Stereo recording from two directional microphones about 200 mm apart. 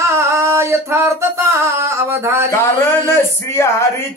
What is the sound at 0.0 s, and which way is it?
Singing, 15° right (ahead or behind).